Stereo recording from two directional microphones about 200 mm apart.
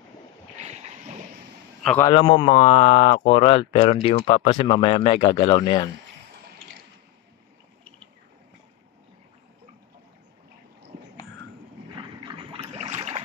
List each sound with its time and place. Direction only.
1.8 s a man's voice: 5° left (ahead or behind)
2.0 s speech: 25° left (ahead or behind)
11.9 s boat: 25° right (ahead or behind)